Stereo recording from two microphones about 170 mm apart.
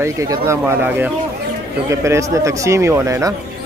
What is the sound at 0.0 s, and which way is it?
Speech, 20° right (ahead or behind).